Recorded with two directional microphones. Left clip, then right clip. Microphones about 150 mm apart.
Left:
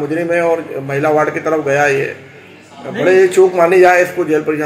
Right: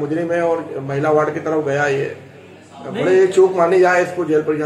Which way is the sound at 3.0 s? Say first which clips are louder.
Left 3 dB; 40° left (ahead or behind).